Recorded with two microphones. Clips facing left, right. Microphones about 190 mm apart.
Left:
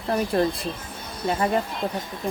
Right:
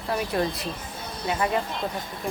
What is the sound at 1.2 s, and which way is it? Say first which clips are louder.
Speech: left 3 dB; 40° left (ahead or behind).